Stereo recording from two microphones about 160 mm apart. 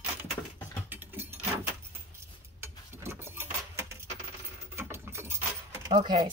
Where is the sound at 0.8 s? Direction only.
10° right (ahead or behind).